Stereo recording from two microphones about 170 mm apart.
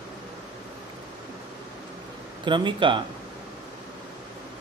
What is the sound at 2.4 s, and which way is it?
Speech, 30° right (ahead or behind).